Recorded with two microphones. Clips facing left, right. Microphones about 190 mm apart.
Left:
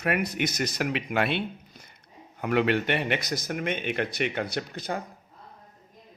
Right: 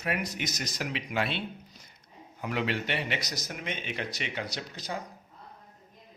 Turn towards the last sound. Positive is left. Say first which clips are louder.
# left 5 dB
turn(degrees=55)  # may be behind; listen again after turning